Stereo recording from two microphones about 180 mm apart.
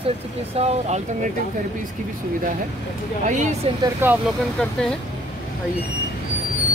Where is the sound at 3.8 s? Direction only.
10° right (ahead or behind).